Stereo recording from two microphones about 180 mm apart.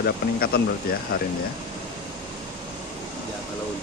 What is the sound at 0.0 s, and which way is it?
Speech, 60° left (ahead or behind).